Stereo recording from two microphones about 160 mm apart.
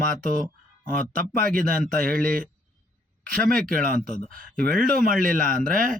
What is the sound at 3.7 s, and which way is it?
Speech, 60° right (ahead or behind).